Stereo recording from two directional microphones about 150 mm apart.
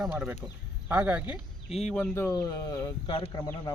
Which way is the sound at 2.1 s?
20° left (ahead or behind).